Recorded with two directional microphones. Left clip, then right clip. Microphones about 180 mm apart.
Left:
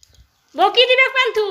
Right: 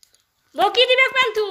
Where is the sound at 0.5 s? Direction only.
5° left (ahead or behind).